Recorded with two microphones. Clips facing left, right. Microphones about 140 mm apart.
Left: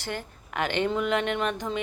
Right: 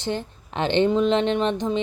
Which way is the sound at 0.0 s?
20° right (ahead or behind).